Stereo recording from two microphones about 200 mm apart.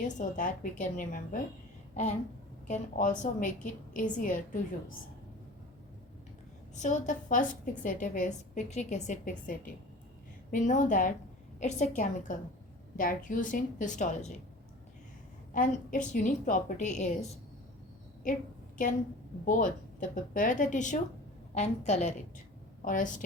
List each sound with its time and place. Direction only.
0.0 s a woman's voice: 40° left (ahead or behind)
2.6 s a woman's voice: 40° left (ahead or behind)
6.7 s a woman's voice: 40° left (ahead or behind)
10.5 s a woman's voice: 40° left (ahead or behind)
15.5 s a woman's voice: 40° left (ahead or behind)
18.3 s a woman's voice: 40° left (ahead or behind)
19.5 s a woman's voice: 40° left (ahead or behind)